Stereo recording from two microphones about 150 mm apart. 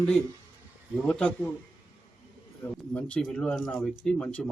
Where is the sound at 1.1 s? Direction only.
10° left (ahead or behind).